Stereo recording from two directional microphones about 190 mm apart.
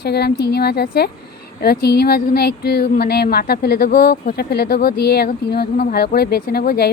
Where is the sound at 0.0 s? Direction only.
60° left (ahead or behind).